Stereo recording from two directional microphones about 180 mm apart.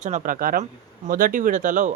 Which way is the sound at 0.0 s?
45° right (ahead or behind).